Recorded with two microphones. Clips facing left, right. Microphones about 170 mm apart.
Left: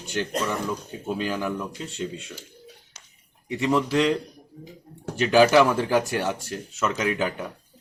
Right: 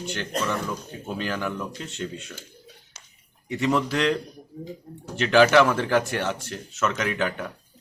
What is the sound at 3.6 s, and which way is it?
Speech, 5° left (ahead or behind).